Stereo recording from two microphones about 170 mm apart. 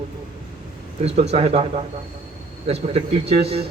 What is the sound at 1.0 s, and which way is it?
Speech, 40° right (ahead or behind).